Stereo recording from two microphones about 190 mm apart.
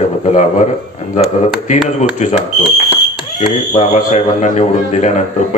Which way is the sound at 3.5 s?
35° left (ahead or behind).